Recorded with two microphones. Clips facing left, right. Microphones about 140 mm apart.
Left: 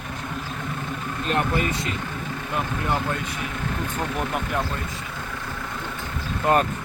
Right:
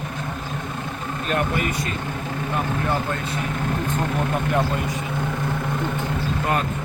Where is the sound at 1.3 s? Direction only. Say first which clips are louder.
Even; 30° left (ahead or behind).